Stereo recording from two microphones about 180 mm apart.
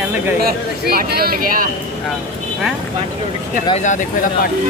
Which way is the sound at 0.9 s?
60° right (ahead or behind).